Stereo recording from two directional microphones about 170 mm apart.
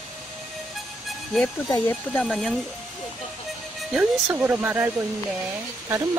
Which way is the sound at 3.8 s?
Centre (ahead or behind).